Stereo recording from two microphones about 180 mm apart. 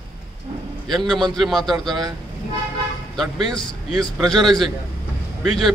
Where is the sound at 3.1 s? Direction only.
Centre (ahead or behind).